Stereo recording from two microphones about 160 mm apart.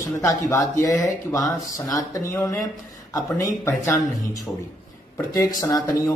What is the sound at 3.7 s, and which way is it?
A man's voice, 15° left (ahead or behind).